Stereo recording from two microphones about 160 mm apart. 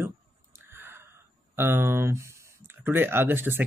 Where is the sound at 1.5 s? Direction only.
15° right (ahead or behind).